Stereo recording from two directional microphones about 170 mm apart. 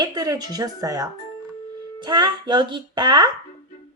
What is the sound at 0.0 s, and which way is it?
Speech, 25° right (ahead or behind).